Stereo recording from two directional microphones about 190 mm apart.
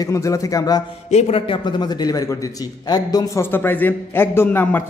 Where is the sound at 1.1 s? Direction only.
35° left (ahead or behind).